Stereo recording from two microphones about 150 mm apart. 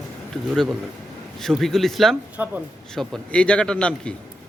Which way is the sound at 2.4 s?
15° right (ahead or behind).